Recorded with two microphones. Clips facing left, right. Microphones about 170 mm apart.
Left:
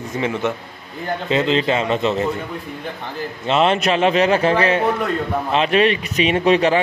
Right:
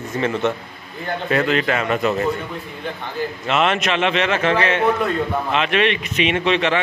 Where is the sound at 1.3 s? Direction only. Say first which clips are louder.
Left 1 dB; 25° left (ahead or behind).